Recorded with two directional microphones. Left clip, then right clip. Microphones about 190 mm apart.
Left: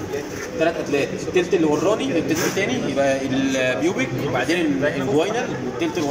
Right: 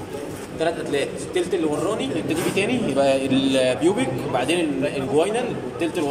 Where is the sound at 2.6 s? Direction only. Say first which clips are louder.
Right 4 dB; 10° right (ahead or behind).